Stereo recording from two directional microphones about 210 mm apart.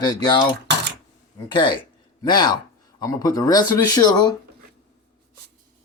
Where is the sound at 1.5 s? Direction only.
20° left (ahead or behind).